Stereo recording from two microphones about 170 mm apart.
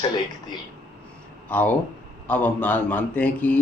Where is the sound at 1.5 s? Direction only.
10° left (ahead or behind).